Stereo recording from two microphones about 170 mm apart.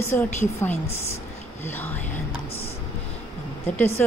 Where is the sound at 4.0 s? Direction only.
10° left (ahead or behind).